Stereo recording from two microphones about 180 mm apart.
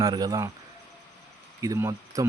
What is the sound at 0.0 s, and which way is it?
Speech, 20° right (ahead or behind).